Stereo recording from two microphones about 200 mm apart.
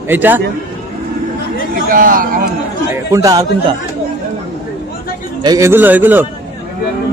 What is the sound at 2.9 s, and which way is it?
Speech, 15° right (ahead or behind).